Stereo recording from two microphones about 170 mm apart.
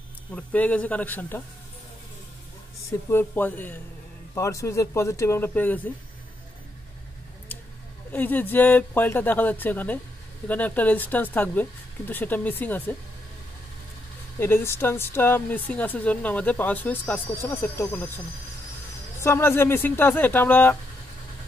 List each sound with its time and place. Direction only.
0.3 s speech: 10° left (ahead or behind)
3.1 s speech: 10° left (ahead or behind)
8.1 s speech: 10° left (ahead or behind)
14.4 s speech: 15° left (ahead or behind)
19.1 s speech: 15° left (ahead or behind)